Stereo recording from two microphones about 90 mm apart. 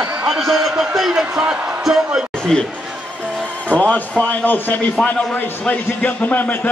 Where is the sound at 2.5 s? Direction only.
5° left (ahead or behind).